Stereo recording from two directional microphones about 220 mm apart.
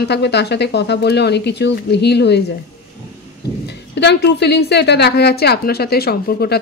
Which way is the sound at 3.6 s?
50° left (ahead or behind).